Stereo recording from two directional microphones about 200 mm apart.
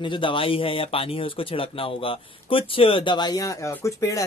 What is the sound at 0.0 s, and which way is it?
Speech, 25° left (ahead or behind).